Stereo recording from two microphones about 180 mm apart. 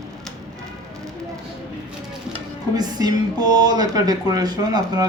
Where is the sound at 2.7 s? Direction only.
20° right (ahead or behind).